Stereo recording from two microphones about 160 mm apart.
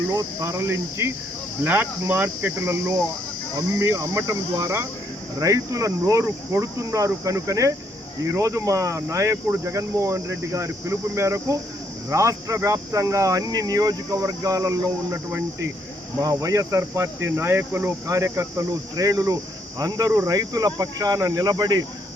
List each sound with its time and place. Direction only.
0.1 s speech: 20° right (ahead or behind)